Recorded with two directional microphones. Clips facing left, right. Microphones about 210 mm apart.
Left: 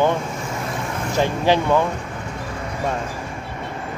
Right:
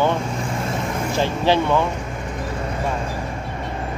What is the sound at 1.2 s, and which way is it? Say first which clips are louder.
Speech: left 1 dB; 15° left (ahead or behind).